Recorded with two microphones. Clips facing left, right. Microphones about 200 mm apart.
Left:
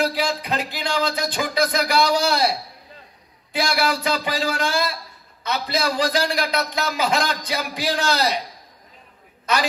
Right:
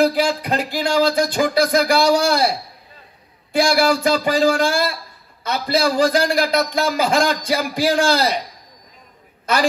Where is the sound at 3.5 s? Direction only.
50° right (ahead or behind).